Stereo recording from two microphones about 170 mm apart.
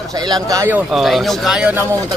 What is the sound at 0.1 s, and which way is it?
Speech, 25° right (ahead or behind).